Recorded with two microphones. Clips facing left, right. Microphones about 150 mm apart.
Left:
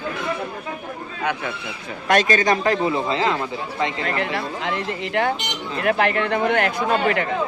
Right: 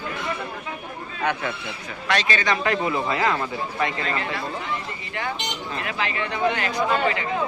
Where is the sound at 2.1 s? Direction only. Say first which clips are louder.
Left 6 dB; 45° left (ahead or behind); by 3.9 s 20° left (ahead or behind).